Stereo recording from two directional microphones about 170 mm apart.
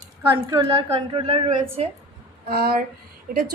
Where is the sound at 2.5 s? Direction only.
65° right (ahead or behind).